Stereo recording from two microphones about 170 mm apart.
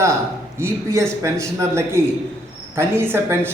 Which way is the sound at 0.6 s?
15° right (ahead or behind).